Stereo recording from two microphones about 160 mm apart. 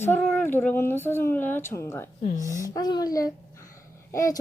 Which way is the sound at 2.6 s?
25° left (ahead or behind).